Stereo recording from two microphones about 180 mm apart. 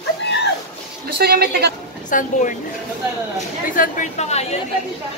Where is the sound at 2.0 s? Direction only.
45° left (ahead or behind).